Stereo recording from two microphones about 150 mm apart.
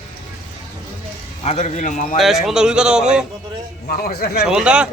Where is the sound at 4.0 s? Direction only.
85° left.